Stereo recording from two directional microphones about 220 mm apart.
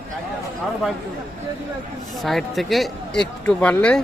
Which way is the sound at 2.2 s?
Centre (ahead or behind).